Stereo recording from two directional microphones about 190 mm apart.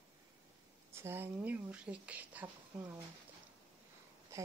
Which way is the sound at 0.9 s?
10° right (ahead or behind).